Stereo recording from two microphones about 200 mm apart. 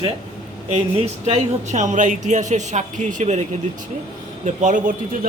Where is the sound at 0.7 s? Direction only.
30° right (ahead or behind).